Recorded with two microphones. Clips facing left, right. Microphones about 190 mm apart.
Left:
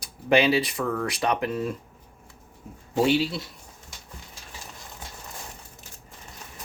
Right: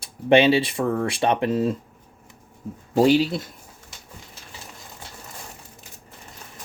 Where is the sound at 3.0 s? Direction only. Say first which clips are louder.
Right 5 dB; 45° right (ahead or behind).